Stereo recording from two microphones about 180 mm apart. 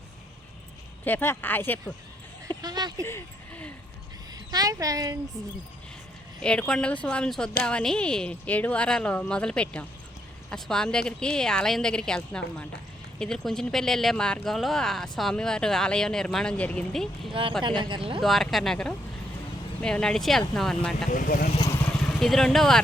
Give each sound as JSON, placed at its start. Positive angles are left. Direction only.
{"t": 1.0, "sound": "speech", "side_deg": 10}
{"t": 2.6, "sound": "a sound", "side_deg": -20}
{"t": 3.1, "sound": "a sound", "side_deg": 10}
{"t": 4.4, "sound": "speech", "side_deg": -20}
{"t": 6.4, "sound": "speech", "side_deg": 5}
{"t": 17.6, "sound": "speech", "side_deg": -25}
{"t": 18.2, "sound": "speech", "side_deg": 0}
{"t": 21.1, "sound": "speech", "side_deg": 50}
{"t": 22.2, "sound": "speech", "side_deg": 0}